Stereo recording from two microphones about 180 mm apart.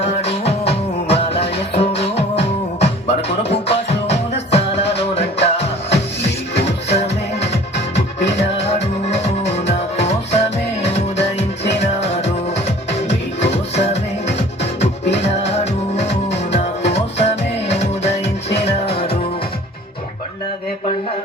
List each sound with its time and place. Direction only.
0.0 s music: 35° left (ahead or behind)